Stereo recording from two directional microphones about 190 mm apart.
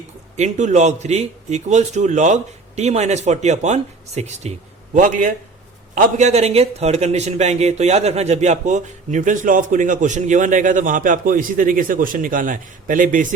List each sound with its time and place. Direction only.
0.3 s a man's voice: 40° right (ahead or behind)